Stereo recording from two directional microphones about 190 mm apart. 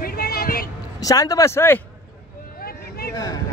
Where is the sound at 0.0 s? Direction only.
50° left (ahead or behind).